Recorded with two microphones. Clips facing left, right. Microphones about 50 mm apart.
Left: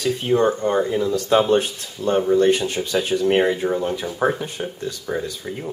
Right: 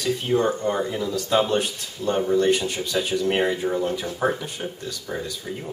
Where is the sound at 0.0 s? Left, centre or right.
Centre.